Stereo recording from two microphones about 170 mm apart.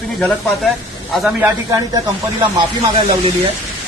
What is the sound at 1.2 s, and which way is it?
Speech, 15° right (ahead or behind).